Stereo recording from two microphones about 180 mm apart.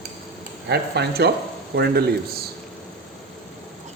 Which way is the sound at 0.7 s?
70° right (ahead or behind).